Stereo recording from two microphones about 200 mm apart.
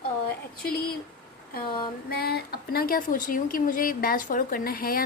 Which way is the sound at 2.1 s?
50° left (ahead or behind).